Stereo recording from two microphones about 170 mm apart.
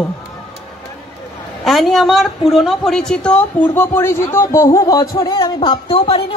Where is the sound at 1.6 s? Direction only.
Centre (ahead or behind).